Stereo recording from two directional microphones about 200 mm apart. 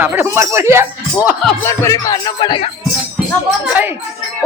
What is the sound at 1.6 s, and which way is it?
Speech, 15° left (ahead or behind).